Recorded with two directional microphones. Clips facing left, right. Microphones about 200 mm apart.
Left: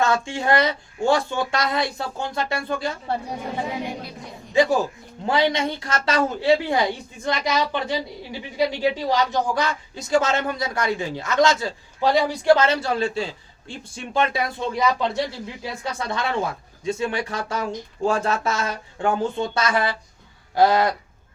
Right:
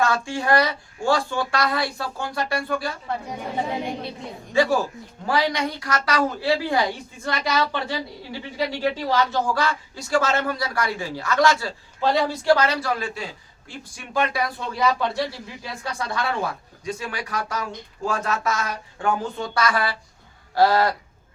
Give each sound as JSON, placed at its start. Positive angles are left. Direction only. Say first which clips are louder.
{"t": 0.0, "sound": "a woman's voice", "louder": "left 1 dB", "side_deg": 20}
{"t": 4.5, "sound": "a woman's voice", "louder": "left 2 dB", "side_deg": 20}